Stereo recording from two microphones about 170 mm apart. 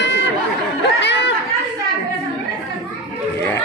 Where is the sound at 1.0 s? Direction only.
90° left.